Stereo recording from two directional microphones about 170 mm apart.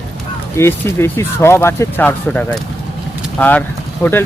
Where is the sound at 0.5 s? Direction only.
15° left (ahead or behind).